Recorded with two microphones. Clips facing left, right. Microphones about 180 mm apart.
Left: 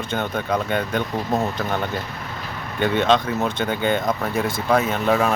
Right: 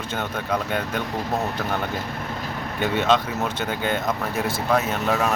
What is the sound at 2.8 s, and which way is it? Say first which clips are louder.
Speech: left 2 dB; 5° right (ahead or behind).